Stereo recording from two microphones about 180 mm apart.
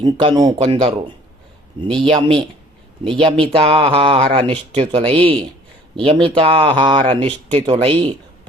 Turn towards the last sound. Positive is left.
turn(degrees=-30)  # may be behind; listen again after turning